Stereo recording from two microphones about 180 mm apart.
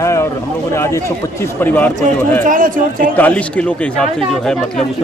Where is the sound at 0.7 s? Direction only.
15° left (ahead or behind).